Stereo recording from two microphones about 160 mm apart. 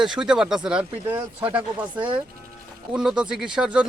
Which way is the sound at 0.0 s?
5° right (ahead or behind).